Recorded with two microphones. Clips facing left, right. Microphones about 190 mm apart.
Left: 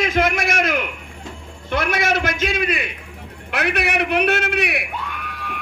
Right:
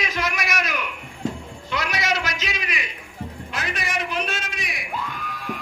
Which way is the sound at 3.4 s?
65° left (ahead or behind).